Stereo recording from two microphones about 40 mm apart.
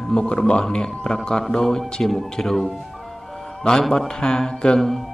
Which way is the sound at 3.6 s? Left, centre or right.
Centre.